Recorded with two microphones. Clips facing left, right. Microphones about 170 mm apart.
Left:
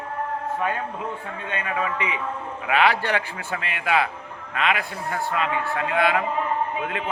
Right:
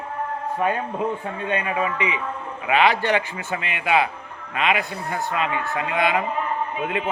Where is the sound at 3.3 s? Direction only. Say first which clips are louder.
Right 2 dB; 5° right (ahead or behind).